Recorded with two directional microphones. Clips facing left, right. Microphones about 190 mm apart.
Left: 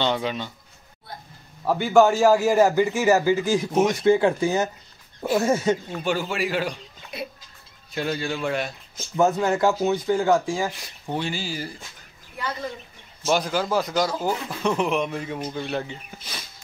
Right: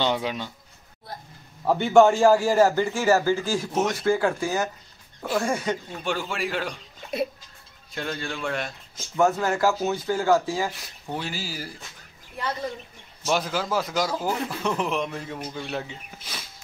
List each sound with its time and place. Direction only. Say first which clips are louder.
0.0 s speech: left 1 dB; 10° right (ahead or behind)
1.6 s speech: right 1 dB; centre (ahead or behind); by 5.8 s 25° left (ahead or behind)
6.0 s speech: left 3 dB; 5° left (ahead or behind)
7.9 s speech: left 5 dB; 5° left (ahead or behind)
9.2 s speech: left 2 dB; 20° left (ahead or behind)
11.1 s speech: left 4 dB; 5° right (ahead or behind)
13.2 s speech: left 3 dB; centre (ahead or behind)